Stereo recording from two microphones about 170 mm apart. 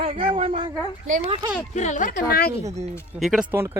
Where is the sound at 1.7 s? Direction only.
45° left (ahead or behind).